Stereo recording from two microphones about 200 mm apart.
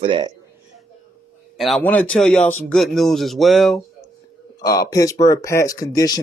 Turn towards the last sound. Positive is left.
turn(degrees=20)  # may be behind; listen again after turning